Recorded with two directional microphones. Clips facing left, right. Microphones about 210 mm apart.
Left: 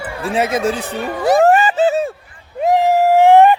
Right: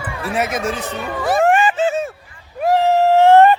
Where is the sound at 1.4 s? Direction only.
40° left (ahead or behind).